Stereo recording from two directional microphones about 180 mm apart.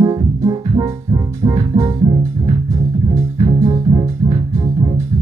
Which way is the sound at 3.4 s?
20° right (ahead or behind).